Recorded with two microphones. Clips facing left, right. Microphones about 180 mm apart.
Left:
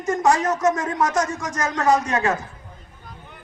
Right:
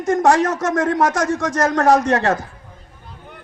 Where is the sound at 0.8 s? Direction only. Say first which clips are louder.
Right 6 dB; 90° right.